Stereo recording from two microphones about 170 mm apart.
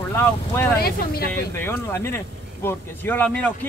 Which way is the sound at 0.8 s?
65° left (ahead or behind).